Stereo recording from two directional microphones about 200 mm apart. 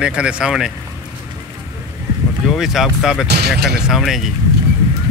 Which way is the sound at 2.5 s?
Centre (ahead or behind).